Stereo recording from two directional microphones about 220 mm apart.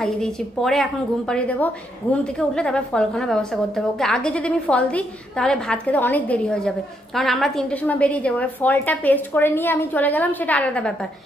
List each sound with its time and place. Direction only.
0.0 s a woman's voice: centre (ahead or behind)